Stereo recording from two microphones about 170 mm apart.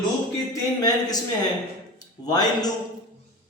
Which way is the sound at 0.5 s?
20° left (ahead or behind).